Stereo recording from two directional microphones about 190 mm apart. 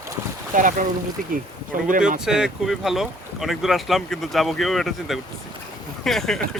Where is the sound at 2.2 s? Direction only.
5° right (ahead or behind).